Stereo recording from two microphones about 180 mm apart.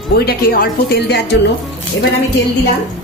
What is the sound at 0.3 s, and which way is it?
A woman's voice, 55° left (ahead or behind).